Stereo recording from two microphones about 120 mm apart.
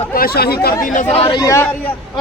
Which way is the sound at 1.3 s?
25° left (ahead or behind).